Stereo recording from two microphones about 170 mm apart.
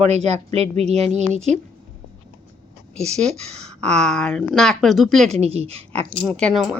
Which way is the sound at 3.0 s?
40° right (ahead or behind).